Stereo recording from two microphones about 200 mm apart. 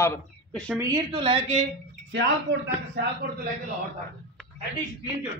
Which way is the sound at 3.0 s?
60° right (ahead or behind).